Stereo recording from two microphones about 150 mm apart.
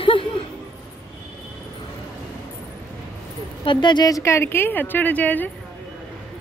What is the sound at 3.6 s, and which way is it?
A woman's voice, 30° left (ahead or behind).